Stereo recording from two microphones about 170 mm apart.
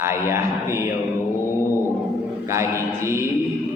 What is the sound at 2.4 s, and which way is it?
Speech, 15° right (ahead or behind).